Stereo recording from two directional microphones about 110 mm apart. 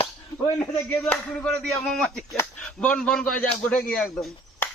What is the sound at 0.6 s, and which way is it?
A man's voice, 20° left (ahead or behind).